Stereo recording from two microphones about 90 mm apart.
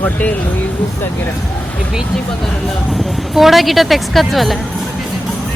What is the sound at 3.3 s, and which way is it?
A woman's voice, centre (ahead or behind).